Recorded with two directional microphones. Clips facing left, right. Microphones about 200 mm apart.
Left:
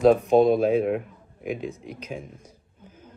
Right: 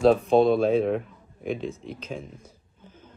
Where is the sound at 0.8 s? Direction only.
5° left (ahead or behind).